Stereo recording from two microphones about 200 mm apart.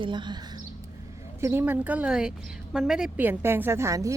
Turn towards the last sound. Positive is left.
turn(degrees=-15)  # may be behind; listen again after turning